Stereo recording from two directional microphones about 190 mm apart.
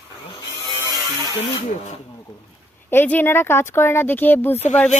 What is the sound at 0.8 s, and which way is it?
Electric shaver, 15° right (ahead or behind).